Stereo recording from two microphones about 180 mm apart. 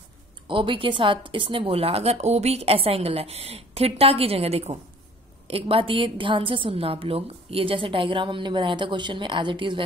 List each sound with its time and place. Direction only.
0.5 s a woman's voice: 30° right (ahead or behind)